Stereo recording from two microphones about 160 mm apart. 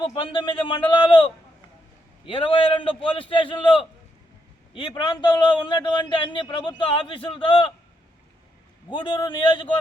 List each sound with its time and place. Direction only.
0.0 s a man's voice: 35° left (ahead or behind)
8.9 s a man's voice: 30° left (ahead or behind)